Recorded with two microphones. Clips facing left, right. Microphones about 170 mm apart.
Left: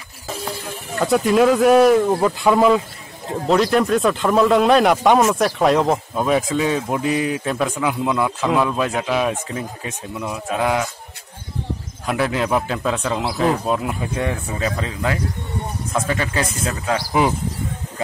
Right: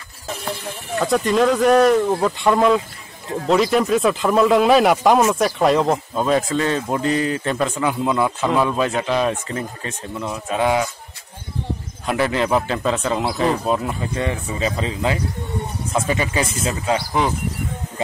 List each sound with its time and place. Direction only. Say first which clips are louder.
1.0 s speech: left 2 dB; 5° left (ahead or behind)
12.1 s speech: right 1 dB; centre (ahead or behind)
14.6 s speech: right 3 dB; 20° right (ahead or behind)